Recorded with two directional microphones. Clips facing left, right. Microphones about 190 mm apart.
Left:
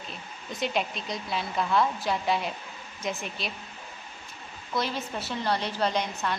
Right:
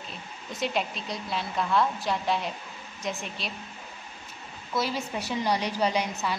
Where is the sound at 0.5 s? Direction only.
Centre (ahead or behind).